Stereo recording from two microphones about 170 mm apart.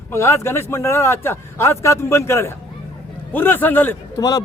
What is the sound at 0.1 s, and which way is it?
A man's voice, 15° left (ahead or behind).